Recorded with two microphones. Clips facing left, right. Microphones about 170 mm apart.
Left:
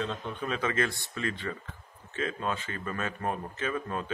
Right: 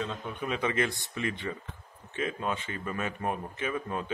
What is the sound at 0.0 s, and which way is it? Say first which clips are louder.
Mantra: left 1 dB; 15° right (ahead or behind).